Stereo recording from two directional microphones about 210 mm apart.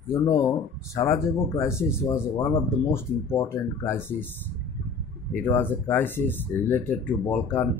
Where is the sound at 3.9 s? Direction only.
10° left (ahead or behind).